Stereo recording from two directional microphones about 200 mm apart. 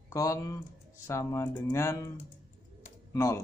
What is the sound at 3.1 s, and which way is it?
Speech, 15° left (ahead or behind).